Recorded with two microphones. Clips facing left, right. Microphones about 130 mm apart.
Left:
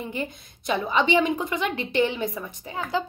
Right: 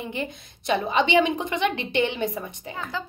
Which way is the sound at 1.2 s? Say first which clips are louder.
Right 1 dB; 20° right (ahead or behind).